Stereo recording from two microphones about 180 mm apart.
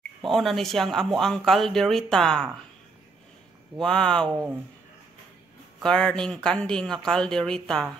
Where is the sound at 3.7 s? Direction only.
5° left (ahead or behind).